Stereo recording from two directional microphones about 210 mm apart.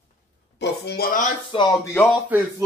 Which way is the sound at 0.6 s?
55° left (ahead or behind).